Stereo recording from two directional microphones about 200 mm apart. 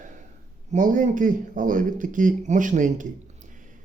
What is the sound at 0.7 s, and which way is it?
Speech, 40° right (ahead or behind).